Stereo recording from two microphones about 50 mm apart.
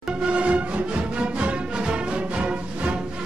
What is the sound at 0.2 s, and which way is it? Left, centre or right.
Music, right.